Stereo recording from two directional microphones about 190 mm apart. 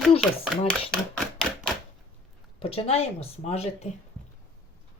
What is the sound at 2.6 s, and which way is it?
Speech, 30° left (ahead or behind).